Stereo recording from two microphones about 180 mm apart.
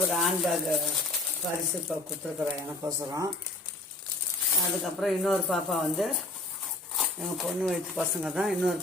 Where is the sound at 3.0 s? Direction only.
20° right (ahead or behind).